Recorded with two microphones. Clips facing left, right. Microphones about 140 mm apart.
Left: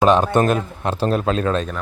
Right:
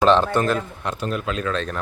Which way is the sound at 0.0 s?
15° left (ahead or behind).